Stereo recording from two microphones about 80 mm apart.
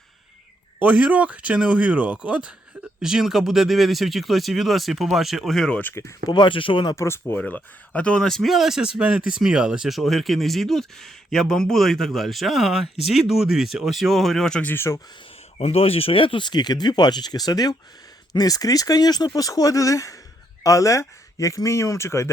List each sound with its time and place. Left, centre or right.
0.8 s speech: centre
5.9 s speech: left
6.2 s speech: left
6.9 s speech: left
7.3 s speech: centre
14.6 s speech: left
16.1 s speech: left